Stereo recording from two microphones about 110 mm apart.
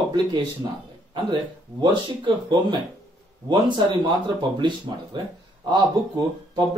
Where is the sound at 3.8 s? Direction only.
45° right (ahead or behind).